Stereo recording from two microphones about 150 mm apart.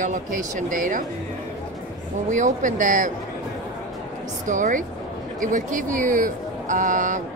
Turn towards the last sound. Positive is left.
turn(degrees=-60)  # may be behind; listen again after turning